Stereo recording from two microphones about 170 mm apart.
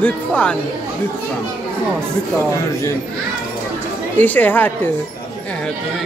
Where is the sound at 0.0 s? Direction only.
5° left (ahead or behind).